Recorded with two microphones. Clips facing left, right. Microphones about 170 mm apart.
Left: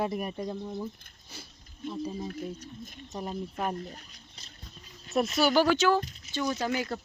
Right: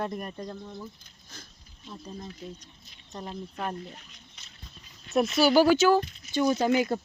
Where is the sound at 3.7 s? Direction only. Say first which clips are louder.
Left 1 dB; 40° left (ahead or behind).